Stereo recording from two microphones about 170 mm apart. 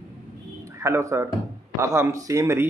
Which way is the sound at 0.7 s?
15° right (ahead or behind).